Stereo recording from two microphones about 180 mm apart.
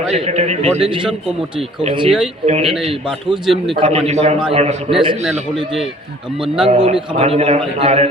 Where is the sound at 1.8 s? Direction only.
25° right (ahead or behind).